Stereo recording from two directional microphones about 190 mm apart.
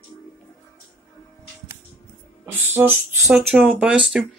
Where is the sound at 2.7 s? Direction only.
10° right (ahead or behind).